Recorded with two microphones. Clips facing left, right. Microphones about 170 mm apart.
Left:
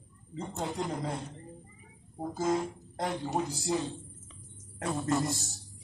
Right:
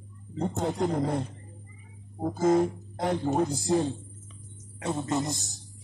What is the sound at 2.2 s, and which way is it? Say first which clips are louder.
Speech: right 7 dB; 50° right (ahead or behind).